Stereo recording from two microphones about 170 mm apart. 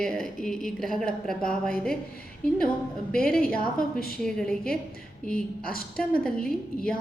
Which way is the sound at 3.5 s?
60° left (ahead or behind).